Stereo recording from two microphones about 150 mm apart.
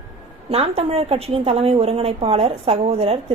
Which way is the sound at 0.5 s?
40° right (ahead or behind).